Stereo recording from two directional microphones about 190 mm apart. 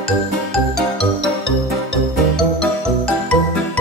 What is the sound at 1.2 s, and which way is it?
Music, 70° right (ahead or behind).